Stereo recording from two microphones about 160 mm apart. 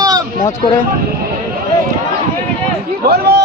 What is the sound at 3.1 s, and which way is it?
Speech, 80° right.